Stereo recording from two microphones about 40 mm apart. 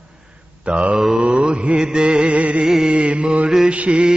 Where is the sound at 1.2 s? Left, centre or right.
Right.